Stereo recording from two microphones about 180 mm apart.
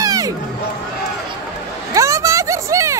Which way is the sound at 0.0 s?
20° right (ahead or behind).